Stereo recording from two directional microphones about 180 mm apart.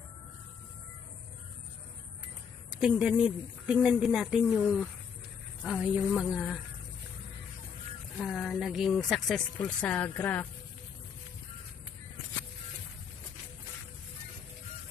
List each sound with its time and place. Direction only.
2.8 s speech: 5° right (ahead or behind)
5.6 s speech: 5° right (ahead or behind)
8.2 s speech: centre (ahead or behind)